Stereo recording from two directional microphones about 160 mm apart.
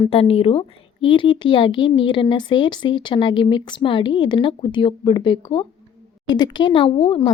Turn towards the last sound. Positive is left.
turn(degrees=30)  # may be behind; listen again after turning